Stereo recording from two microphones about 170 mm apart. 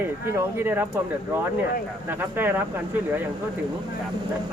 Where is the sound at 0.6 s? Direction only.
10° right (ahead or behind).